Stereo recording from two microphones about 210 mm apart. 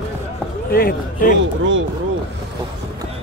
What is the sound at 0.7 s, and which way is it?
Speech, 45° left (ahead or behind).